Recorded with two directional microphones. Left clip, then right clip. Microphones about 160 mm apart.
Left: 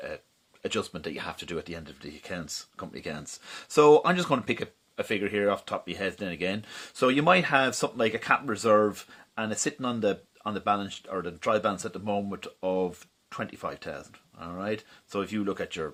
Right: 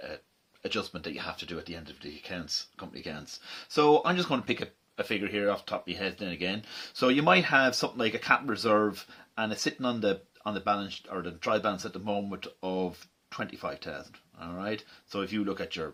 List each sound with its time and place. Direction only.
0.6 s speech: 35° left (ahead or behind)